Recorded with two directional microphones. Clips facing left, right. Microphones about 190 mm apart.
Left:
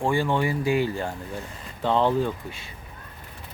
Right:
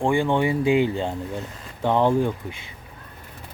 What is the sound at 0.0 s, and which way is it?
Speech, 15° right (ahead or behind).